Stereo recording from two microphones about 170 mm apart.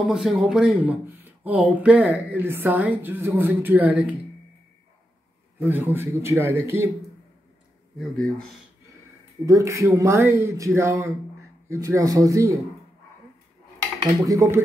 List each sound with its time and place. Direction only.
0.0 s speech: 5° right (ahead or behind)
5.6 s speech: 10° right (ahead or behind)
9.5 s speech: 20° right (ahead or behind)
14.2 s speech: 20° right (ahead or behind)